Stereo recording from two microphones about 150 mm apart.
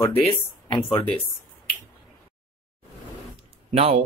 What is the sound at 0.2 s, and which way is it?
Speech, 35° left (ahead or behind).